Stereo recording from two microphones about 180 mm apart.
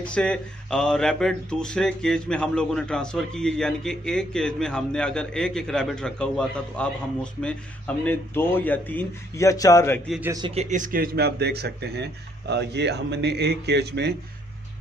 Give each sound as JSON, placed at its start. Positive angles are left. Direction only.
{"t": 0.0, "sound": "speech", "side_deg": 5}
{"t": 10.4, "sound": "speech", "side_deg": -35}